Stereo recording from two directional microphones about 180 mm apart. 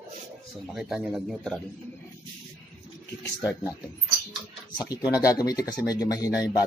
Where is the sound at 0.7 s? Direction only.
Centre (ahead or behind).